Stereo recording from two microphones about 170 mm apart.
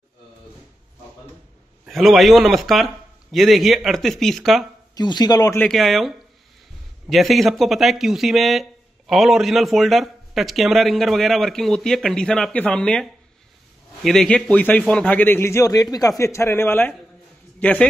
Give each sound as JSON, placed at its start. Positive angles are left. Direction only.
{"t": 1.9, "sound": "speech", "side_deg": 0}
{"t": 4.9, "sound": "speech", "side_deg": 25}
{"t": 5.6, "sound": "a man's voice", "side_deg": 0}